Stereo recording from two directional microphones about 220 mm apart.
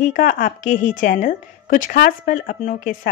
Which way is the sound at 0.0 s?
40° left (ahead or behind).